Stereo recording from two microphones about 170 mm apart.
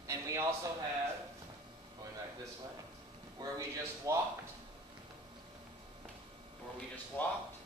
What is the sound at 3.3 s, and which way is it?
Speech, 20° right (ahead or behind).